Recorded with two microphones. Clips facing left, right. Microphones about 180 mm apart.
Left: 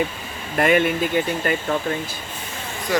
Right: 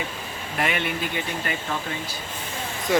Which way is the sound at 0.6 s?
45° left (ahead or behind).